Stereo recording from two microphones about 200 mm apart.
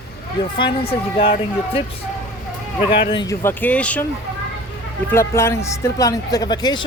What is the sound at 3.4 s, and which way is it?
Speech, 10° left (ahead or behind).